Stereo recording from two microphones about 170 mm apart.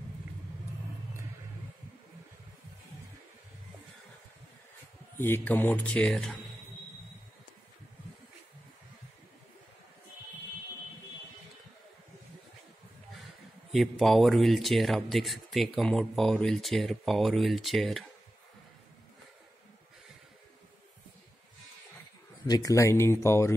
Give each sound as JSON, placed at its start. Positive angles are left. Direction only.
{"t": 5.1, "sound": "speech", "side_deg": 15}
{"t": 13.7, "sound": "speech", "side_deg": 0}
{"t": 22.5, "sound": "speech", "side_deg": 20}